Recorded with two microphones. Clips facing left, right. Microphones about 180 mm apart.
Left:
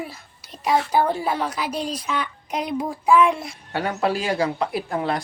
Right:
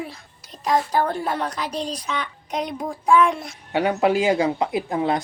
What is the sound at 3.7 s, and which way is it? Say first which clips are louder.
Speech: right 4 dB; 15° right (ahead or behind).